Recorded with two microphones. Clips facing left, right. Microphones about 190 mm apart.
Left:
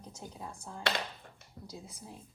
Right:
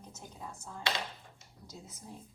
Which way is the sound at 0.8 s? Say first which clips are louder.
Left 2 dB; 55° left (ahead or behind).